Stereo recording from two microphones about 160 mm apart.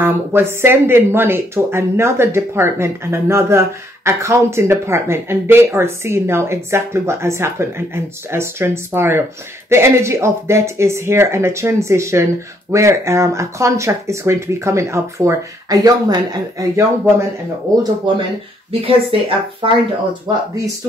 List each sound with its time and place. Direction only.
0.0 s speech: 15° right (ahead or behind)
18.7 s speech: 35° right (ahead or behind)